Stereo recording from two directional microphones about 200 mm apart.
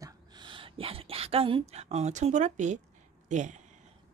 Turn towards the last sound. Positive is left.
turn(degrees=-35)  # may be behind; listen again after turning